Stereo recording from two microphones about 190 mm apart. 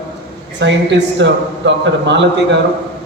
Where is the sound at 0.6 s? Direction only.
65° right (ahead or behind).